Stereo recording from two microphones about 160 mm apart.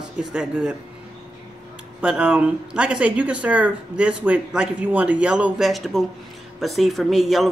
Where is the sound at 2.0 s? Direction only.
5° right (ahead or behind).